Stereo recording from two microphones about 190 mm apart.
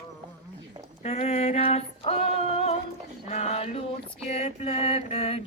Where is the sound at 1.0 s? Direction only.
35° left (ahead or behind).